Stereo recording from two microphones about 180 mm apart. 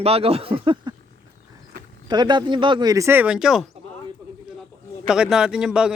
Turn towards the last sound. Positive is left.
turn(degrees=-5)  # may be behind; listen again after turning